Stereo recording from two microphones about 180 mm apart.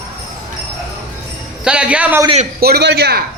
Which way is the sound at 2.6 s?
60° right (ahead or behind).